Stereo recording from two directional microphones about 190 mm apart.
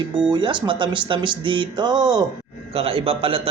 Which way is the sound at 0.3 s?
25° right (ahead or behind).